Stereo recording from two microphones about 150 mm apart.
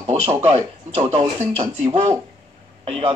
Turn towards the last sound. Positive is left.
turn(degrees=-40)  # may be behind; listen again after turning